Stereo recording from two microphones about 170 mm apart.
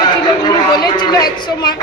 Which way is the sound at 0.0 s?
25° left (ahead or behind).